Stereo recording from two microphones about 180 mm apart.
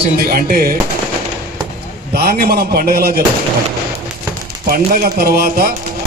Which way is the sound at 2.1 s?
60° right (ahead or behind).